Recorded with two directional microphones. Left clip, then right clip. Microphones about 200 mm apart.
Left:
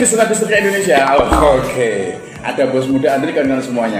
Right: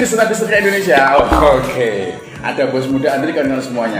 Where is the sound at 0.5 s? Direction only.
20° left (ahead or behind).